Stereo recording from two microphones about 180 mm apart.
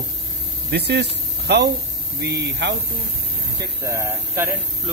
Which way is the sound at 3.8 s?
15° right (ahead or behind).